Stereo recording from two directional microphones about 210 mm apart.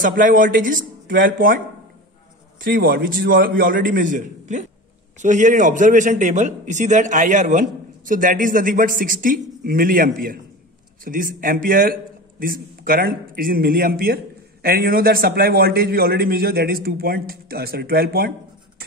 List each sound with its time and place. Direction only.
0.0 s a man's voice: 40° right (ahead or behind)
2.6 s a man's voice: 45° right (ahead or behind)